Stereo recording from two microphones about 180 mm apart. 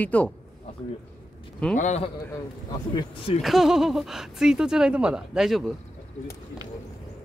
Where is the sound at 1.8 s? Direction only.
40° left (ahead or behind).